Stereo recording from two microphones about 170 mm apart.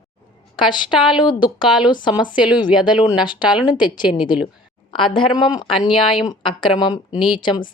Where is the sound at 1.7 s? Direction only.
5° right (ahead or behind).